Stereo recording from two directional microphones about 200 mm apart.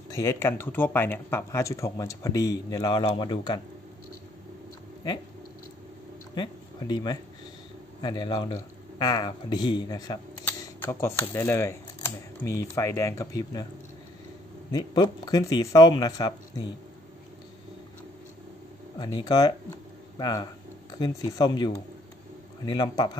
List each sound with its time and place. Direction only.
0.1 s speech: 15° left (ahead or behind)
6.3 s speech: 20° left (ahead or behind)
12.7 s speech: 15° left (ahead or behind)
14.7 s speech: 20° left (ahead or behind)
18.9 s speech: 20° left (ahead or behind)